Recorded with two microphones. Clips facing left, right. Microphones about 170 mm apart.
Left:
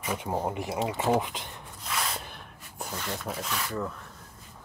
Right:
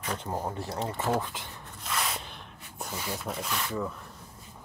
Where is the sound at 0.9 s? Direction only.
15° left (ahead or behind).